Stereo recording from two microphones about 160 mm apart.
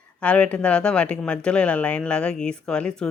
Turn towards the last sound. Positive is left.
turn(degrees=5)  # may be behind; listen again after turning